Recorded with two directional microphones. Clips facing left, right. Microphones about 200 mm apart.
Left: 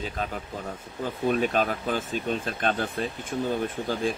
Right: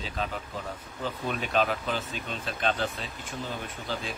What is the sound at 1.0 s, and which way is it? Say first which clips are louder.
Speech: left 8 dB; 45° left (ahead or behind).